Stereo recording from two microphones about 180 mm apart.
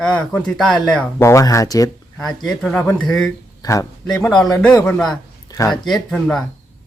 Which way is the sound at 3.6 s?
15° left (ahead or behind).